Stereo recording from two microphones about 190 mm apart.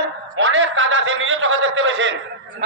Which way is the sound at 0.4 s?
85° right.